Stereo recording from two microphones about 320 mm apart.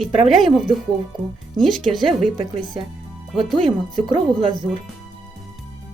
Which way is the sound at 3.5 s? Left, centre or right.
Centre.